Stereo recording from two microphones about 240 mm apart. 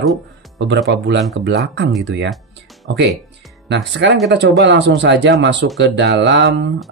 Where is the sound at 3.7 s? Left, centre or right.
Right.